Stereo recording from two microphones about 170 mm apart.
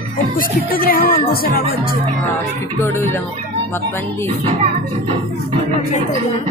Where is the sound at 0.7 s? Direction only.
60° left (ahead or behind).